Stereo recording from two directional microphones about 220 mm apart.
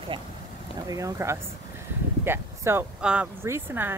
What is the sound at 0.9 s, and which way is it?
Speech, 15° right (ahead or behind).